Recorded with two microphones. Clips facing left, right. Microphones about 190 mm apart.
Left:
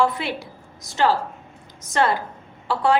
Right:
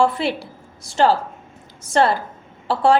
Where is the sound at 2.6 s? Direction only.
30° right (ahead or behind).